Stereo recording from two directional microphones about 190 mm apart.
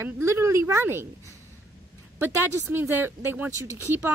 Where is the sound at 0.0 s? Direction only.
15° right (ahead or behind).